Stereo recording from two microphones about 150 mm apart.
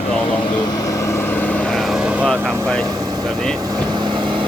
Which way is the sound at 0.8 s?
20° left (ahead or behind).